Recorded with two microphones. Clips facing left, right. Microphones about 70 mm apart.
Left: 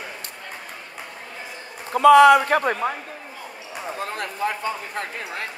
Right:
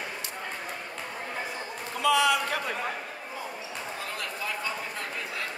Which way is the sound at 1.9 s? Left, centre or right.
Left.